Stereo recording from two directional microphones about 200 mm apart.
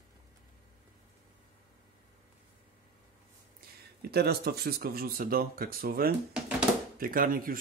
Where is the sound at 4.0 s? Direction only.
50° right (ahead or behind).